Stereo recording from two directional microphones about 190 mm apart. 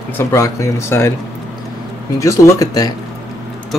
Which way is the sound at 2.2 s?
15° left (ahead or behind).